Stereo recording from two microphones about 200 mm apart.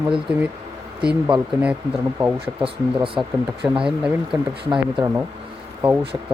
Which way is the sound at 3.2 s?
15° right (ahead or behind).